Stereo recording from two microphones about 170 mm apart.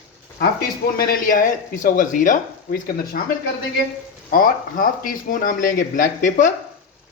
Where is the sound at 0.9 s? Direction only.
60° left (ahead or behind).